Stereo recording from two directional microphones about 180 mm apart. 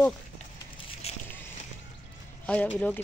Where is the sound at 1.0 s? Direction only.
35° left (ahead or behind).